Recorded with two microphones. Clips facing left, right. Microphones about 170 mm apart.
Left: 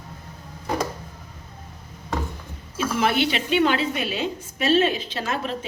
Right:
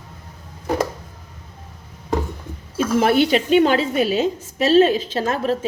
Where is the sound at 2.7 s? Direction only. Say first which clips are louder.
Right 6 dB; 45° right (ahead or behind).